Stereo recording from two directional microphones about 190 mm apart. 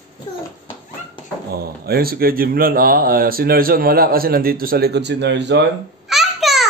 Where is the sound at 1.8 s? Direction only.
55° right (ahead or behind).